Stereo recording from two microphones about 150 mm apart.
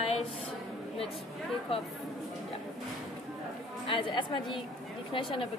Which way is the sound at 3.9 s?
35° left (ahead or behind).